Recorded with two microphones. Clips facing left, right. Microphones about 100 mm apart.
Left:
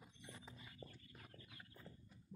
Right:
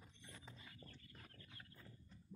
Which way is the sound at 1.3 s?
15° left (ahead or behind).